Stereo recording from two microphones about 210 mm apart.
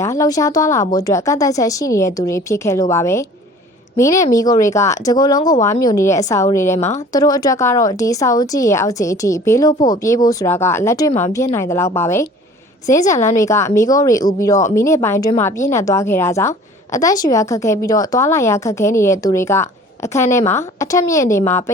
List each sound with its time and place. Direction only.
0.0 s a woman's voice: 15° left (ahead or behind)
6.7 s speech: 30° left (ahead or behind)
7.1 s a woman's voice: 15° left (ahead or behind)